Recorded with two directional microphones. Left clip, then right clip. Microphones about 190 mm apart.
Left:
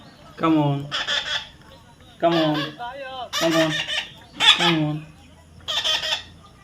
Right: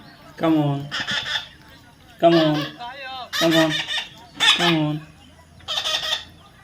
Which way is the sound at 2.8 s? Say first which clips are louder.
Left 1 dB; 30° left (ahead or behind).